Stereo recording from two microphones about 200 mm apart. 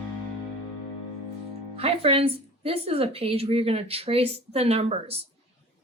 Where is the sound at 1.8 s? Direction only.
30° right (ahead or behind).